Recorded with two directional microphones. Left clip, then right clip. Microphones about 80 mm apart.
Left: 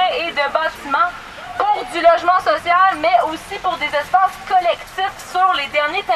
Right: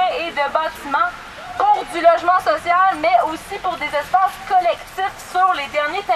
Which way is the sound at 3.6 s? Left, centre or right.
Centre.